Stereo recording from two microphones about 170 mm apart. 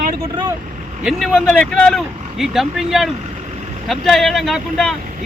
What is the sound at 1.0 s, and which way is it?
Speech, 5° left (ahead or behind).